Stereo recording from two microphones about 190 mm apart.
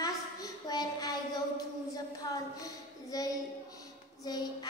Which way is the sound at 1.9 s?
20° left (ahead or behind).